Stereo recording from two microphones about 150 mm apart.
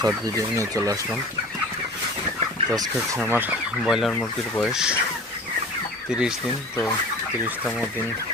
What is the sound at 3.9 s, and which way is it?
Speech, 5° right (ahead or behind).